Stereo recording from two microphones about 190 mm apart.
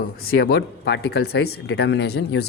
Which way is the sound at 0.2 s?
50° left (ahead or behind).